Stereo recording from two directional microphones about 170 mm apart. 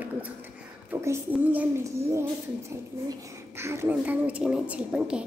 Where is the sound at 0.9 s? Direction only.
15° right (ahead or behind).